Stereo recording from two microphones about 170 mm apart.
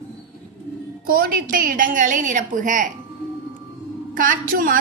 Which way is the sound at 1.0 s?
60° right (ahead or behind).